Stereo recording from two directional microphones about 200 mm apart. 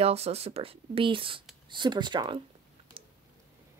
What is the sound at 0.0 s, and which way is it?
Speech, 30° right (ahead or behind).